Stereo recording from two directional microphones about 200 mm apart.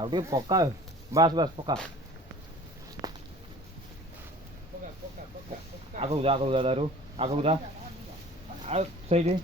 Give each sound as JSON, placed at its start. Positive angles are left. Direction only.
{"t": 0.0, "sound": "speech", "side_deg": -20}
{"t": 6.0, "sound": "speech", "side_deg": -30}
{"t": 8.6, "sound": "speech", "side_deg": -35}